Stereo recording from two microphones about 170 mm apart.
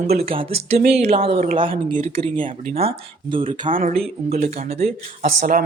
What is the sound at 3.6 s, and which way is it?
Speech, 55° right (ahead or behind).